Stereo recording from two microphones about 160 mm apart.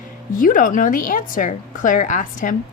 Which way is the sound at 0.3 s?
60° left (ahead or behind).